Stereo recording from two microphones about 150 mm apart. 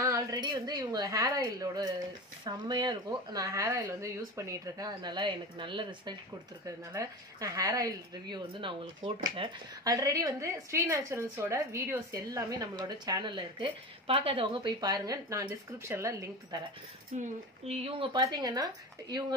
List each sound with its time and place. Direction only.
0.0 s a sound: 20° right (ahead or behind)
0.4 s a woman's voice: 30° right (ahead or behind)
6.6 s a woman's voice: 20° right (ahead or behind)
9.8 s a woman's voice: 20° right (ahead or behind)
17.2 s speech: 45° right (ahead or behind)
18.2 s a woman's voice: 25° right (ahead or behind)